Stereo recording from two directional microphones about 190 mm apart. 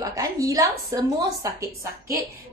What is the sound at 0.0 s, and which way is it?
A woman's voice, 20° right (ahead or behind).